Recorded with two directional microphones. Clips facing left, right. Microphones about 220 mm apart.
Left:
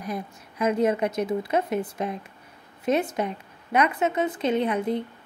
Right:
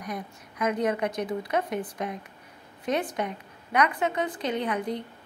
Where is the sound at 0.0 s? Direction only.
25° left (ahead or behind).